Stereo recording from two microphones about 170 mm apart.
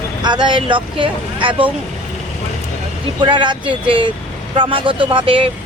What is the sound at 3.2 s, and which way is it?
Speech, 25° right (ahead or behind).